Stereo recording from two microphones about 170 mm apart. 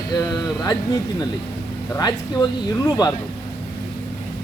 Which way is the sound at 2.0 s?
25° left (ahead or behind).